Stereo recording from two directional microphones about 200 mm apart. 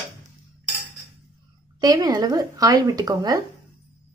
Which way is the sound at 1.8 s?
20° right (ahead or behind).